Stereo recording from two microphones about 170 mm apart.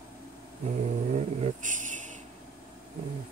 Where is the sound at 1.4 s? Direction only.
50° right (ahead or behind).